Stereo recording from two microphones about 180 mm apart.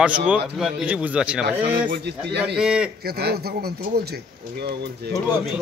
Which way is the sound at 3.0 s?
60° right (ahead or behind).